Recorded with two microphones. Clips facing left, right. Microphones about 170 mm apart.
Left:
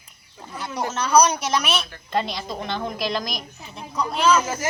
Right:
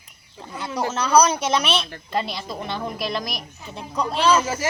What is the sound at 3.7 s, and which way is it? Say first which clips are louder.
Speech: right 2 dB; 30° right (ahead or behind).